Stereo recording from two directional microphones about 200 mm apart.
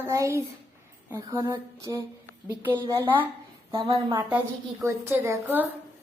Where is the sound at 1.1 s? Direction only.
20° right (ahead or behind).